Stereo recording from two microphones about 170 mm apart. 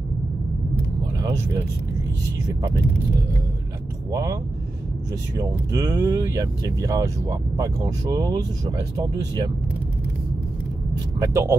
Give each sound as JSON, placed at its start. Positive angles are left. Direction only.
{"t": 4.1, "sound": "speech", "side_deg": -20}
{"t": 5.4, "sound": "speech", "side_deg": -20}
{"t": 11.1, "sound": "speech", "side_deg": -15}